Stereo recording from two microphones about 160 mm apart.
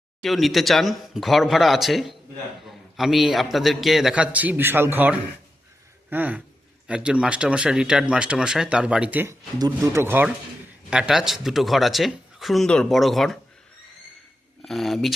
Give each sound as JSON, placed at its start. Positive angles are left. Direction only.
{"t": 0.2, "sound": "speech", "side_deg": 0}
{"t": 9.6, "sound": "speech", "side_deg": -20}
{"t": 14.6, "sound": "speech", "side_deg": 0}